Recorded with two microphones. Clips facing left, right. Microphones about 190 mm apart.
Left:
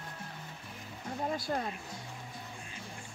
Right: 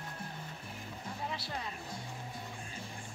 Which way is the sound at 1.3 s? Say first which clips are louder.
Left 7 dB; 45° left (ahead or behind).